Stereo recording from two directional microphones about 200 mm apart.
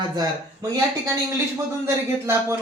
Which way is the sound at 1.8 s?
10° right (ahead or behind).